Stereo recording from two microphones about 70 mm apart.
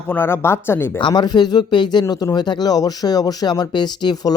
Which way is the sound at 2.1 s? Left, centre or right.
Left.